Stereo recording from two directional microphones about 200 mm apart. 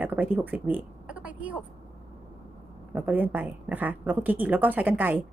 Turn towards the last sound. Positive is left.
turn(degrees=-10)  # may be behind; listen again after turning